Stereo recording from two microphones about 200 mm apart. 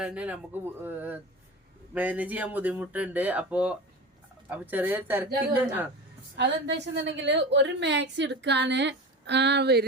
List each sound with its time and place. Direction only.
0.0 s speech: 5° right (ahead or behind)
6.3 s a woman's voice: 60° right (ahead or behind)